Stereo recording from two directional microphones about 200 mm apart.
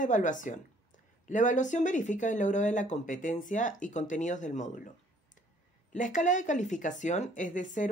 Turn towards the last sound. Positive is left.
turn(degrees=40)  # may be behind; listen again after turning